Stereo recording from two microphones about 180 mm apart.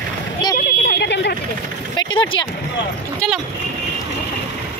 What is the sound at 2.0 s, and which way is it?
Speech, 25° left (ahead or behind).